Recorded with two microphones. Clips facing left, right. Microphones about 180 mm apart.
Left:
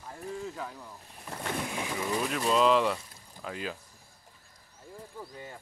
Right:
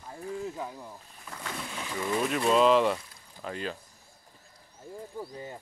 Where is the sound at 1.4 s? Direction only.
20° left (ahead or behind).